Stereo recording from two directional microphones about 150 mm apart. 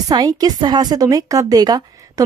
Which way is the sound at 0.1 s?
25° right (ahead or behind).